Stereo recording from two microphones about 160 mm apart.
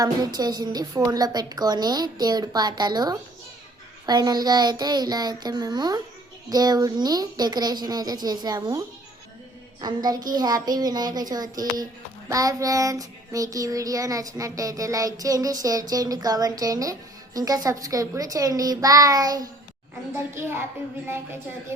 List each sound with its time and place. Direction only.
0.0 s child singing: 25° right (ahead or behind)
9.8 s child singing: 25° right (ahead or behind)
20.1 s a child's voice: 15° right (ahead or behind)
21.7 s a child's voice: 15° right (ahead or behind)